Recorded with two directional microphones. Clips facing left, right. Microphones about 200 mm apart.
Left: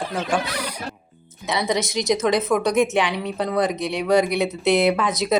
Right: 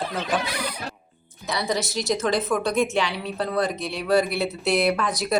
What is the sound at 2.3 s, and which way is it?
A woman's voice, centre (ahead or behind).